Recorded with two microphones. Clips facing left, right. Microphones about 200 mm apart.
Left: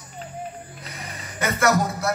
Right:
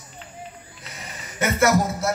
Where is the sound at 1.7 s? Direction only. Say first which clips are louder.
Even; 5° right (ahead or behind).